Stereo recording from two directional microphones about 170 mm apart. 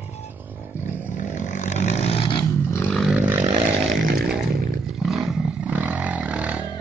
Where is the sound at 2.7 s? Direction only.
10° left (ahead or behind).